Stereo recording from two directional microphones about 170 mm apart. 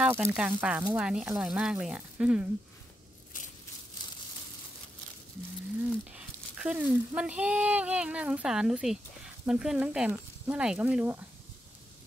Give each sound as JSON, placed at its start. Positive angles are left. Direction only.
{"t": 0.0, "sound": "speech", "side_deg": -15}
{"t": 3.3, "sound": "a sound", "side_deg": 50}
{"t": 6.0, "sound": "speech", "side_deg": -5}